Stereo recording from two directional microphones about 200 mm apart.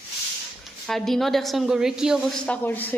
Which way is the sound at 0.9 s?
Centre (ahead or behind).